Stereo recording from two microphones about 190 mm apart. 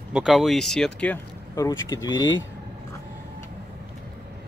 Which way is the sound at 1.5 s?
15° left (ahead or behind).